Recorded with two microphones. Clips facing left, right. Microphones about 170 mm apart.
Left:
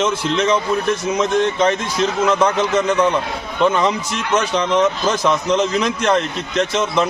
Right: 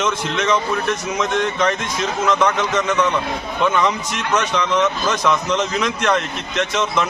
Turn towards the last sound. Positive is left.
turn(degrees=30)  # may be behind; listen again after turning